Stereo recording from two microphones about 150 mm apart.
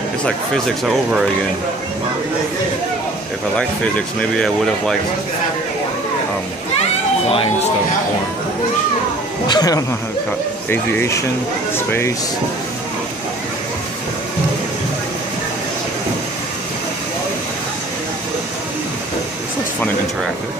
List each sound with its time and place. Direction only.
4.2 s speech: 5° left (ahead or behind)
9.5 s speech: 25° left (ahead or behind)